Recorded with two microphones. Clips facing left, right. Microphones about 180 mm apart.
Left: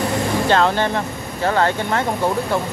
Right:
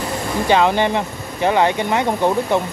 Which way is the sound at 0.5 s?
15° right (ahead or behind).